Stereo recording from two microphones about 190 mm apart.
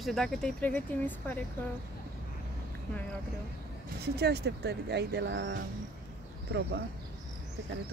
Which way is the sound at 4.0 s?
60° right (ahead or behind).